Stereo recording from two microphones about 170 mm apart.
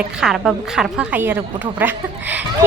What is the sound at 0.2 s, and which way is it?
A woman's voice, centre (ahead or behind).